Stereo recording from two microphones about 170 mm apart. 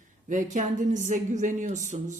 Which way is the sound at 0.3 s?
45° right (ahead or behind).